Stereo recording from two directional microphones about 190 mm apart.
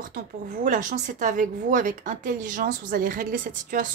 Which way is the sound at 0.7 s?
40° right (ahead or behind).